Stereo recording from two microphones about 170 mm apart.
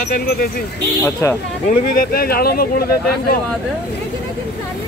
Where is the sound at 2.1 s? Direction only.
65° left (ahead or behind).